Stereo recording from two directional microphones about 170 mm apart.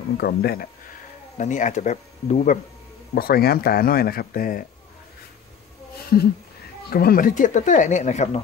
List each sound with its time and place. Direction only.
0.2 s speech: 65° left (ahead or behind)
1.4 s speech: 45° left (ahead or behind)
3.2 s speech: 65° left (ahead or behind)
6.1 s speech: 60° left (ahead or behind); by 8.4 s 40° left (ahead or behind)